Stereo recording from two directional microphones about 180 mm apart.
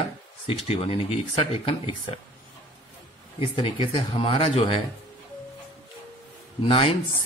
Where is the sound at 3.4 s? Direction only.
30° left (ahead or behind).